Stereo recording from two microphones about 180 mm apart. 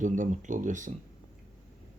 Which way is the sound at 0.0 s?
45° right (ahead or behind).